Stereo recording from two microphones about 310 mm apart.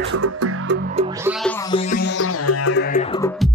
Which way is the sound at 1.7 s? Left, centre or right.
Left.